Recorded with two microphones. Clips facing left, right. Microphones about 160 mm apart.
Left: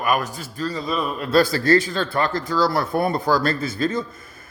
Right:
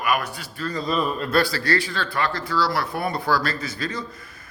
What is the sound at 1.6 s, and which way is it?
A man's voice, 45° left (ahead or behind).